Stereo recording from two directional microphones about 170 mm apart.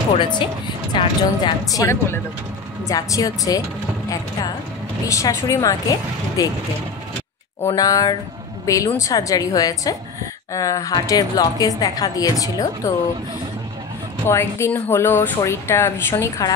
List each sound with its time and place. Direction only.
0.9 s a woman's voice: 25° left (ahead or behind)
5.0 s a woman's voice: 20° left (ahead or behind)
7.7 s a woman's voice: 20° left (ahead or behind)
14.2 s speech: 15° left (ahead or behind)